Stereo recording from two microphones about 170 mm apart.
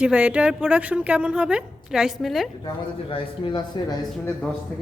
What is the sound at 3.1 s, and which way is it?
Speech, 30° left (ahead or behind).